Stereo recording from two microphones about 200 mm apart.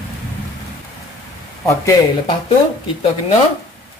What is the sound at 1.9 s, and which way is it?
Speech, 20° left (ahead or behind).